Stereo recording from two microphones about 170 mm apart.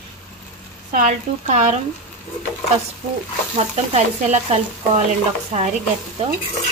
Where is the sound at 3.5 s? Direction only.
40° right (ahead or behind).